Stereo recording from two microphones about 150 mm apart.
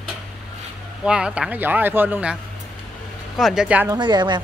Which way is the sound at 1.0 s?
5° right (ahead or behind).